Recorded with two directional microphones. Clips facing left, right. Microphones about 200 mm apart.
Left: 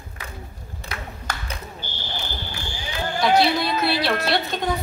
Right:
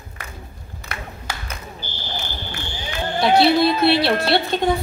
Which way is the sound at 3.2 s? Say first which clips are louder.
Right 4 dB; 30° right (ahead or behind).